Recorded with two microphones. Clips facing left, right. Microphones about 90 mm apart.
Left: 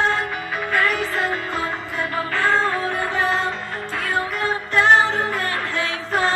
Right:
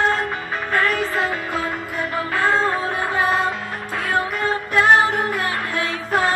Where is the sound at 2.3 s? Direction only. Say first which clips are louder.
Right 1 dB; 15° right (ahead or behind).